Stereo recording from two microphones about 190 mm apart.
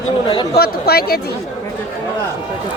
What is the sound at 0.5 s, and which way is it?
Speech, 55° left (ahead or behind).